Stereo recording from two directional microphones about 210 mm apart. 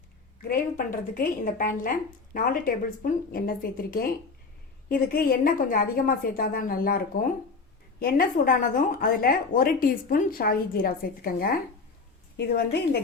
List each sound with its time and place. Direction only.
0.4 s a woman's voice: 40° left (ahead or behind)